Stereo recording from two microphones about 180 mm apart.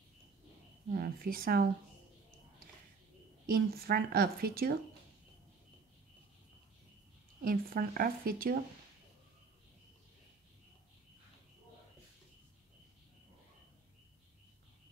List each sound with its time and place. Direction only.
0.9 s a woman's voice: 55° right (ahead or behind)
3.4 s a woman's voice: 60° right (ahead or behind)
7.4 s a woman's voice: 55° right (ahead or behind)